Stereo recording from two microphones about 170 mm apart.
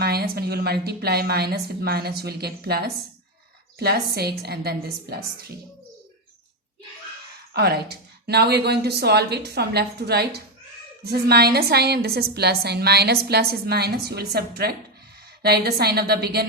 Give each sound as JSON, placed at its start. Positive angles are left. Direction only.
{"t": 0.0, "sound": "a woman's voice", "side_deg": -65}
{"t": 7.5, "sound": "a woman's voice", "side_deg": -70}